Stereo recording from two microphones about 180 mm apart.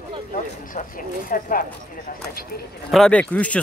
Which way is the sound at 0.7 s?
50° left (ahead or behind).